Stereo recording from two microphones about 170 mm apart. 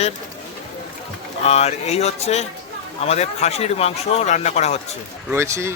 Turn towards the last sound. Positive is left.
turn(degrees=-15)  # may be behind; listen again after turning